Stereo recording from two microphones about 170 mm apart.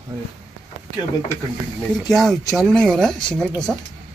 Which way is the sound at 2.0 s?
Centre (ahead or behind).